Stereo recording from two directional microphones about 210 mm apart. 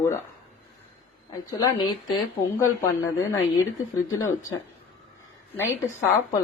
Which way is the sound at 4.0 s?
80° left.